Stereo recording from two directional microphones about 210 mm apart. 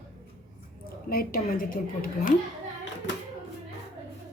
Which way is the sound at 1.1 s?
45° left (ahead or behind).